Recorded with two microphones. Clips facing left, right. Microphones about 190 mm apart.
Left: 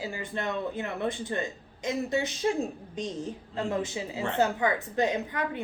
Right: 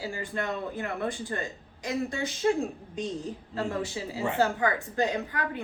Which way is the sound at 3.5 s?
20° left (ahead or behind).